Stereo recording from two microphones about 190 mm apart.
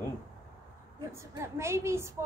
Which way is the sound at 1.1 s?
15° right (ahead or behind).